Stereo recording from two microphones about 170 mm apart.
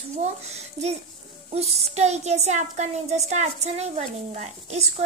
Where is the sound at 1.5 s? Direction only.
40° right (ahead or behind).